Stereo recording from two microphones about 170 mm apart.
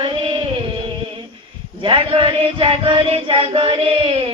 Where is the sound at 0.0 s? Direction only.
30° right (ahead or behind).